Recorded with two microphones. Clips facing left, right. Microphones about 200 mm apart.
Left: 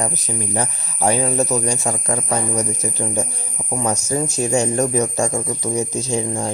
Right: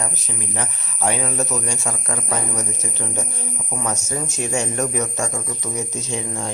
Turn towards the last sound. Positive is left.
turn(degrees=35)  # may be behind; listen again after turning